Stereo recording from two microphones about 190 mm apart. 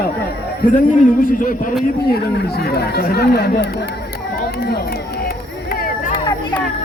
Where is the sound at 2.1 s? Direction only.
55° left (ahead or behind).